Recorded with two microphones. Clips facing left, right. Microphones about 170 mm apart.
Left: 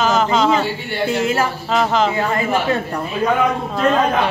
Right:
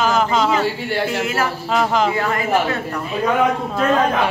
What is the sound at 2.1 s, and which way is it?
Speech, 30° left (ahead or behind).